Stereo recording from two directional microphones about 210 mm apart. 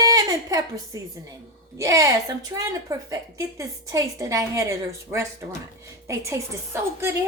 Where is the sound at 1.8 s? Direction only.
15° right (ahead or behind).